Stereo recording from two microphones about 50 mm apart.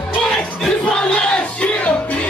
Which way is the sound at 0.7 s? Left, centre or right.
Centre.